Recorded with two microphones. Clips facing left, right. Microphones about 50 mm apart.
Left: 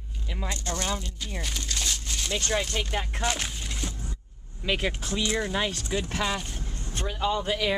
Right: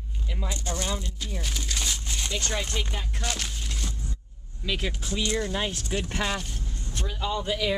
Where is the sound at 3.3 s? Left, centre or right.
Centre.